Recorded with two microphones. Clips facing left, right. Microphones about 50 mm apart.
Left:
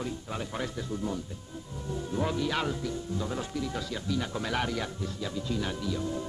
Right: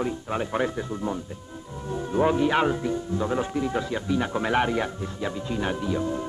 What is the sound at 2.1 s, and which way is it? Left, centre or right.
Speech, right.